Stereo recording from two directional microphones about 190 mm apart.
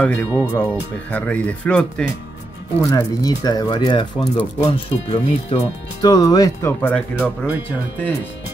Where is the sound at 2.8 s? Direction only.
20° left (ahead or behind).